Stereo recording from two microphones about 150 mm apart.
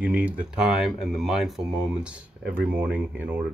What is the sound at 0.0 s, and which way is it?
Speech, 10° right (ahead or behind).